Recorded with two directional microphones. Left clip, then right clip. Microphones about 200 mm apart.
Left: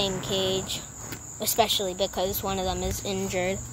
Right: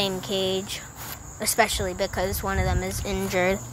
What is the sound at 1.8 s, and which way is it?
Speech, 25° right (ahead or behind).